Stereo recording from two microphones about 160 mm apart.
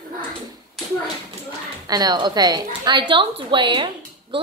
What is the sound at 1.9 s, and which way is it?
A woman's voice, 25° right (ahead or behind).